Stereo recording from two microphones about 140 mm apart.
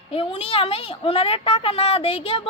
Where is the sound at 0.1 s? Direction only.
45° left (ahead or behind).